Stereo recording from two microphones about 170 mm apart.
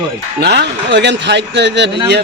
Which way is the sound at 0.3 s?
75° right (ahead or behind).